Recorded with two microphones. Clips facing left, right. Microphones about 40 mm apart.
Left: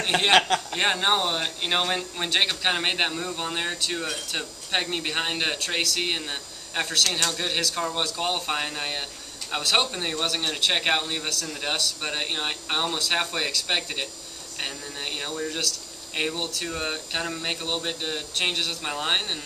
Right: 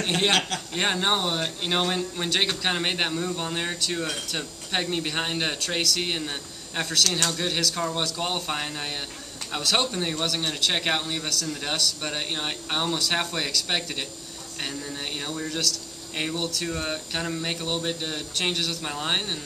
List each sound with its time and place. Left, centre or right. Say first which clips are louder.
0.3 s speech: left 5 dB; left
0.7 s speech: even; centre
15.1 s speech: left 1 dB; centre